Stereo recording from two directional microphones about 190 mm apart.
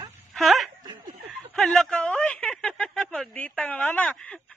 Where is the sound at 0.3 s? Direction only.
Centre (ahead or behind).